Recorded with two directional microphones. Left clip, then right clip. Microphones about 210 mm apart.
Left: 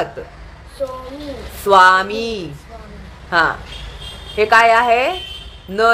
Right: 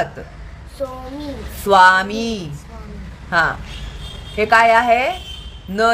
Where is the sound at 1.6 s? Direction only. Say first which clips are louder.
Left 1 dB; 15° right (ahead or behind).